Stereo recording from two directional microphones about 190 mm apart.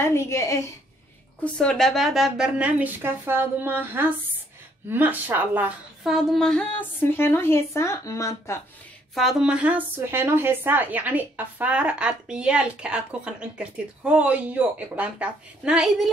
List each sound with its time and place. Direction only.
0.0 s a woman's voice: 15° left (ahead or behind)
1.4 s a woman's voice: 5° left (ahead or behind)
9.1 s speech: centre (ahead or behind)